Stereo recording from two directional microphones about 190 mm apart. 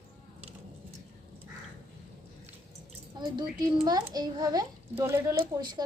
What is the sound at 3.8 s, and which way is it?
A child's voice, 20° right (ahead or behind).